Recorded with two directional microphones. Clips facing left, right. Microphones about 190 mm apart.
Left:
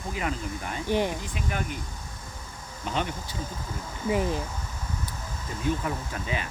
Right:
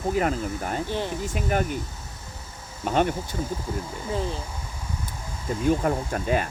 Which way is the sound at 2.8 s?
50° right (ahead or behind).